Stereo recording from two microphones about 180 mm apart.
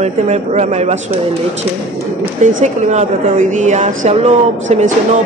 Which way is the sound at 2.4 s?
40° right (ahead or behind).